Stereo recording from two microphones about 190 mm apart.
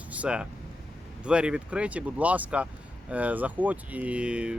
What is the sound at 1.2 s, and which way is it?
Speech, 5° right (ahead or behind).